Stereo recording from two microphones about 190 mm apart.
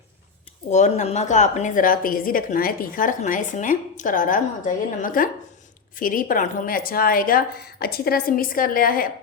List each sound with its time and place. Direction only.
0.7 s a woman's voice: 40° left (ahead or behind)